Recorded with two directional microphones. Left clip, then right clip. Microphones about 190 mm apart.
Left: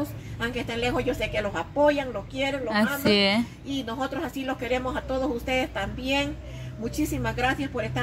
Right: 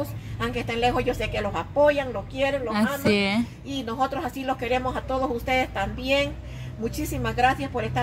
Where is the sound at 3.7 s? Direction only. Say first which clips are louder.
Right 5 dB; 5° right (ahead or behind).